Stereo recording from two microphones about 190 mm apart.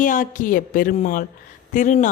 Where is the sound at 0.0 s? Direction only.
45° left (ahead or behind).